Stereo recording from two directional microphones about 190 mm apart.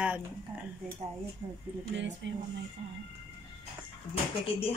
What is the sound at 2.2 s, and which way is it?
Speech, 70° right (ahead or behind).